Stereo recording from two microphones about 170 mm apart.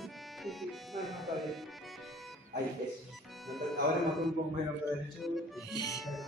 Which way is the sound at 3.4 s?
Centre (ahead or behind).